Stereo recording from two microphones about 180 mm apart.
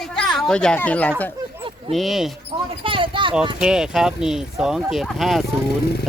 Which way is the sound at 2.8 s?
30° right (ahead or behind).